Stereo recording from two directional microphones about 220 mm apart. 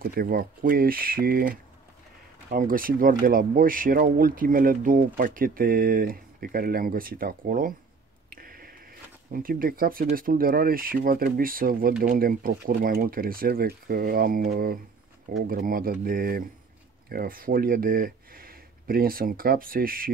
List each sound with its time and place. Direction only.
0.0 s speech: 40° right (ahead or behind)
8.3 s a sound: 40° right (ahead or behind)
9.3 s speech: 40° right (ahead or behind)